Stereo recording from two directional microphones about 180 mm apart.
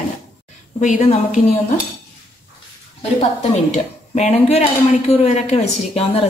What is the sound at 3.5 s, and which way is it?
Speech, 40° left (ahead or behind).